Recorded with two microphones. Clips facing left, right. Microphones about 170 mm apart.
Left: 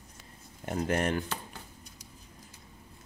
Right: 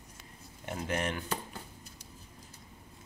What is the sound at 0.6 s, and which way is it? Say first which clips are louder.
Speech: left 5 dB; 40° left (ahead or behind).